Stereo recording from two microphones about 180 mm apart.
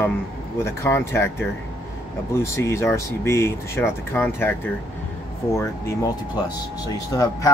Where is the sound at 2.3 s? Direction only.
15° left (ahead or behind).